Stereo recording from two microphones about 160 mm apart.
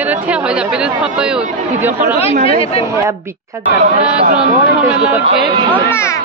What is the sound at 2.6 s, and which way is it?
Speech, 35° left (ahead or behind).